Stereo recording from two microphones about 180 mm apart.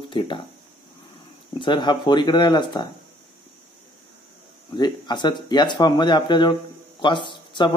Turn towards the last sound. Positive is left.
turn(degrees=25)  # may be behind; listen again after turning